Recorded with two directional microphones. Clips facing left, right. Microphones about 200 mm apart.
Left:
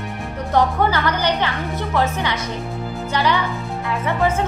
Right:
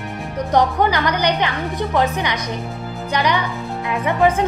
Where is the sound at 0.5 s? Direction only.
15° right (ahead or behind).